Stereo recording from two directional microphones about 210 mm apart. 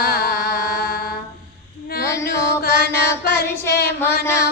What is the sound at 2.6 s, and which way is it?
Mantra, 45° left (ahead or behind).